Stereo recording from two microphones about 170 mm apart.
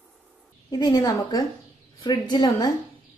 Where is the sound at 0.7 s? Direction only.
20° left (ahead or behind).